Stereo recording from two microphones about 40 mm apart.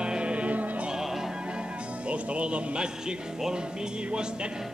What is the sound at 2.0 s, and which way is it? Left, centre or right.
Speech, right.